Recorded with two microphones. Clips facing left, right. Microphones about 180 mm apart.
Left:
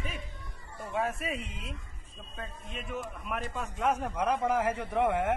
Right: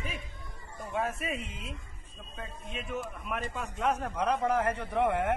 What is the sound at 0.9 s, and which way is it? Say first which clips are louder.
A man's voice: even; centre (ahead or behind).